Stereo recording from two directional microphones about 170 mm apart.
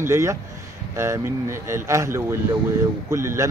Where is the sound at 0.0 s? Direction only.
15° right (ahead or behind).